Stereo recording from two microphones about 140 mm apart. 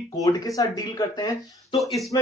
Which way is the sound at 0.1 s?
25° left (ahead or behind).